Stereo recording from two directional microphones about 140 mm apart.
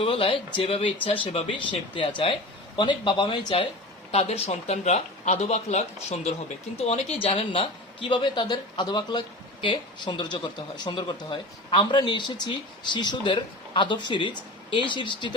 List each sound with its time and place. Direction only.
0.0 s a woman's voice: 40° left (ahead or behind)
4.1 s a woman's voice: 50° left (ahead or behind)